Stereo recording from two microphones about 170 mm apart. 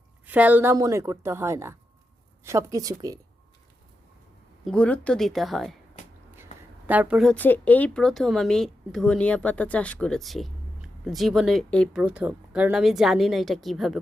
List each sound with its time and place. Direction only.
0.3 s a woman's voice: 10° right (ahead or behind)
4.6 s speech: 5° left (ahead or behind)
6.4 s a sound: 10° right (ahead or behind)
7.3 s speech: 10° left (ahead or behind)